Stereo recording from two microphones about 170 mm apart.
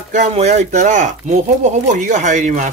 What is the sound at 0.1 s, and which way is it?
Speech, 45° right (ahead or behind).